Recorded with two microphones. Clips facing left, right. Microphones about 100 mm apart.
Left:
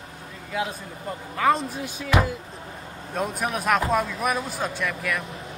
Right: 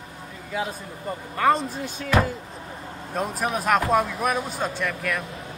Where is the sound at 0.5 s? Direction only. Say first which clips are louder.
Even; centre (ahead or behind).